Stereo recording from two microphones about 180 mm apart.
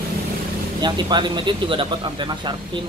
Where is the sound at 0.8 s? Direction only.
25° right (ahead or behind).